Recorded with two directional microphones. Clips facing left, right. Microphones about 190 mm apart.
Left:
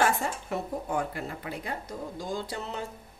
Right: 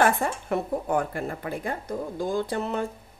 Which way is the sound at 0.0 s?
55° right (ahead or behind).